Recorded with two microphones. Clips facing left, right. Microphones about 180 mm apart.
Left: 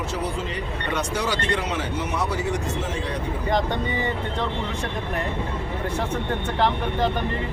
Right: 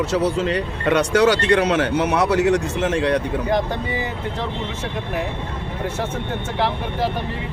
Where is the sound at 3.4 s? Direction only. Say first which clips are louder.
Right 2 dB; 5° right (ahead or behind).